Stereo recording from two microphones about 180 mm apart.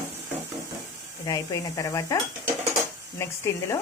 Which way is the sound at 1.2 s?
20° left (ahead or behind).